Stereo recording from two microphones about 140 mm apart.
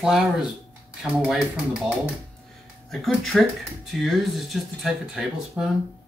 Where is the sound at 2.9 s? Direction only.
Centre (ahead or behind).